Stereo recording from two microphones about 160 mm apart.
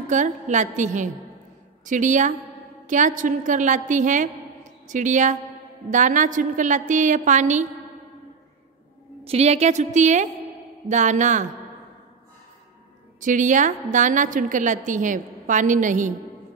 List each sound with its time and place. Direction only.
0.1 s a woman's voice: 50° right (ahead or behind)
9.2 s a woman's voice: 40° right (ahead or behind)
13.2 s a woman's voice: 55° right (ahead or behind)